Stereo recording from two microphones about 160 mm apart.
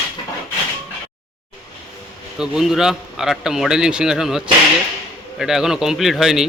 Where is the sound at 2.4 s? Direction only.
5° right (ahead or behind).